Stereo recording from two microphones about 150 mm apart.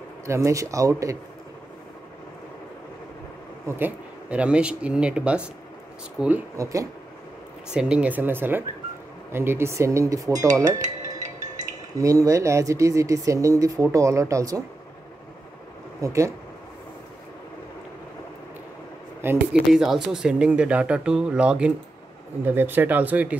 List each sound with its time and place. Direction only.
0.3 s speech: 20° right (ahead or behind)
3.6 s speech: 15° right (ahead or behind)
6.5 s speech: 20° right (ahead or behind)
7.7 s speech: 10° right (ahead or behind); by 10.8 s 25° right (ahead or behind)
12.0 s speech: 20° right (ahead or behind)
16.0 s speech: 20° right (ahead or behind)
19.2 s speech: 5° right (ahead or behind)